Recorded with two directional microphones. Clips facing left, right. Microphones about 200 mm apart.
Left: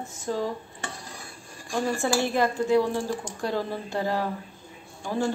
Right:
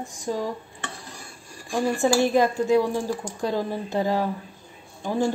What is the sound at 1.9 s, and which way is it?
A woman's voice, 15° right (ahead or behind).